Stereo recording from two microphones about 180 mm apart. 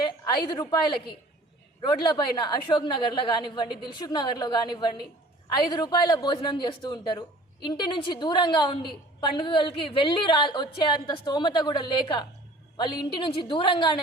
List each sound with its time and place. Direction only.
0.0 s a woman's voice: 25° left (ahead or behind)